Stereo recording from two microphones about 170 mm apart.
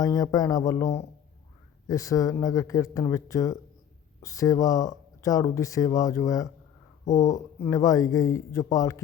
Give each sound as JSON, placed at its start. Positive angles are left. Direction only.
{"t": 0.0, "sound": "speech", "side_deg": 20}